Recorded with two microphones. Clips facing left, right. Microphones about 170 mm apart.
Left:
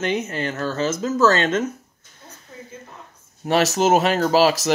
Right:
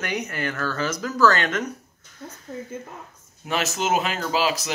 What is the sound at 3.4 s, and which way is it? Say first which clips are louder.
Speech: left 8 dB; 40° left (ahead or behind).